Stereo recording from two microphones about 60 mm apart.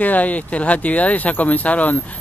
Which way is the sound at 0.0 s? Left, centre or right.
Left.